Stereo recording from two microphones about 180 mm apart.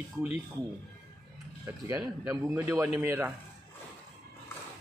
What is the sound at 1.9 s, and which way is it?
Speech, 15° right (ahead or behind).